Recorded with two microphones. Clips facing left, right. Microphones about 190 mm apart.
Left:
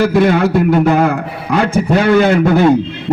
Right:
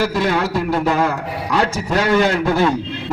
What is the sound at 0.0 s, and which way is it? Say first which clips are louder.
A man's voice: left 7 dB; 60° left (ahead or behind).